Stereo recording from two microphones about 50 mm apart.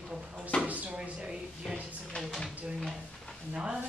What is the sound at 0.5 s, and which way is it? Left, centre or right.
Speech, centre.